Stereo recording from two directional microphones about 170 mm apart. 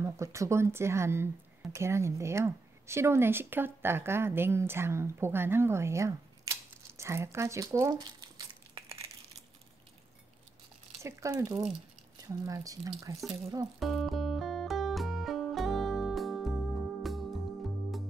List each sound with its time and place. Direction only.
0.0 s speech: 15° right (ahead or behind)
11.0 s speech: 15° right (ahead or behind)
13.7 s music: centre (ahead or behind)